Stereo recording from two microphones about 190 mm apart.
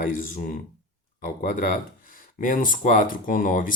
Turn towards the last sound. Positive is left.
turn(degrees=45)  # may be behind; listen again after turning